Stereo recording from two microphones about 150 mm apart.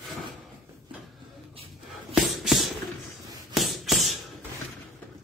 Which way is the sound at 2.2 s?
Centre (ahead or behind).